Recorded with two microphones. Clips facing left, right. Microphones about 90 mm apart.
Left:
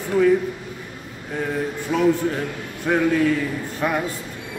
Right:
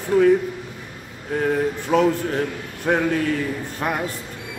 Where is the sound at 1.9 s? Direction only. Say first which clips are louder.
Even; 45° right (ahead or behind).